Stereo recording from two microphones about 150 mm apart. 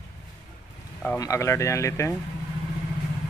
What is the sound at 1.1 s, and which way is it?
Speech, 20° left (ahead or behind).